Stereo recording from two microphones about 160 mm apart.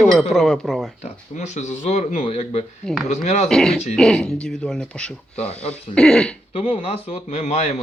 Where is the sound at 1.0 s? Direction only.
45° left (ahead or behind).